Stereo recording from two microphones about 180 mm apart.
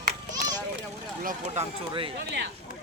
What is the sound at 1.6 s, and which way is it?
Speech, 40° right (ahead or behind).